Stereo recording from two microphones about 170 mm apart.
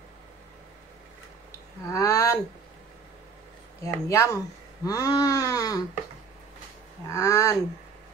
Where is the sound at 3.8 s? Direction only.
15° left (ahead or behind).